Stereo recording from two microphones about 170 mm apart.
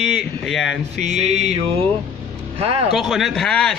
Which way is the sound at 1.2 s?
40° right (ahead or behind).